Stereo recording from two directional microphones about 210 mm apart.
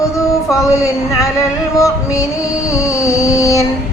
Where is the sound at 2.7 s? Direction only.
15° left (ahead or behind).